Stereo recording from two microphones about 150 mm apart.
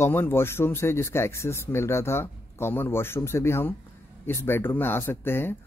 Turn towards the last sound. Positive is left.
turn(degrees=15)  # may be behind; listen again after turning